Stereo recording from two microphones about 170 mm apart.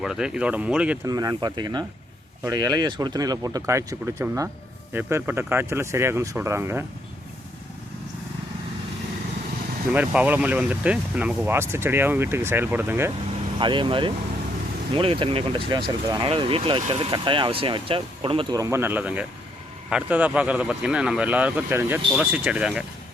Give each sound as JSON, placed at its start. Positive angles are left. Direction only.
{"t": 0.0, "sound": "speech", "side_deg": -5}
{"t": 1.0, "sound": "speech", "side_deg": -20}
{"t": 9.9, "sound": "speech", "side_deg": -10}
{"t": 13.6, "sound": "speech", "side_deg": -30}
{"t": 16.3, "sound": "speech", "side_deg": -35}
{"t": 18.6, "sound": "speech", "side_deg": -15}